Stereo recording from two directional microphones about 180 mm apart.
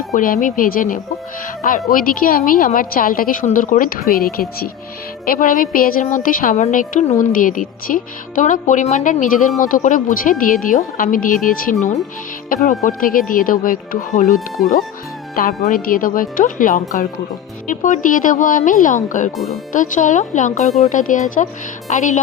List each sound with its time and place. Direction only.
0.1 s a woman's voice: 45° left (ahead or behind)
15.4 s a woman's voice: 50° left (ahead or behind)